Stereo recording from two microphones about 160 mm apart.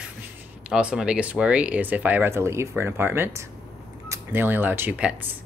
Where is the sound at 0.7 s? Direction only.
5° right (ahead or behind).